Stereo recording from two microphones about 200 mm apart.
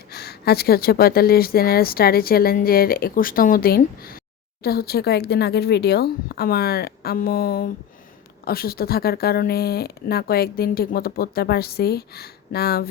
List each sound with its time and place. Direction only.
0.1 s speech: 50° left (ahead or behind)